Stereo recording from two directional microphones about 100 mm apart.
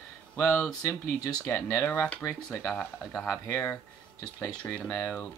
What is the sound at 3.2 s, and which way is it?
Speech, 10° left (ahead or behind).